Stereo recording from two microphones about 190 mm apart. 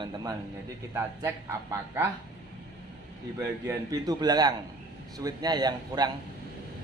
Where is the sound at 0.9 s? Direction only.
15° right (ahead or behind).